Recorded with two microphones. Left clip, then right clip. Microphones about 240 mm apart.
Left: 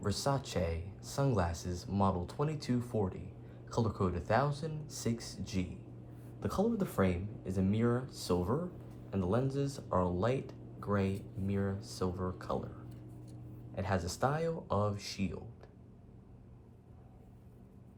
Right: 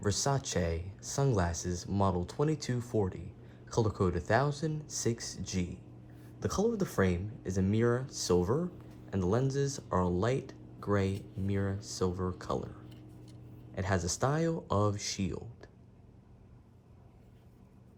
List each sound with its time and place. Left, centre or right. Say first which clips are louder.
0.0 s speech: right 2 dB; right
13.7 s speech: right 2 dB; right